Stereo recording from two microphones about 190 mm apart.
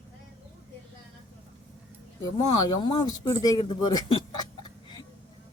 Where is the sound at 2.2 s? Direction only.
25° left (ahead or behind).